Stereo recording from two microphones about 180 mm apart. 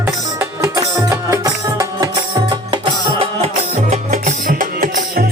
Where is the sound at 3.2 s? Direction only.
35° right (ahead or behind).